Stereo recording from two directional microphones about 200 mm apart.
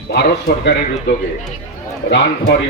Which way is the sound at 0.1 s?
55° left (ahead or behind).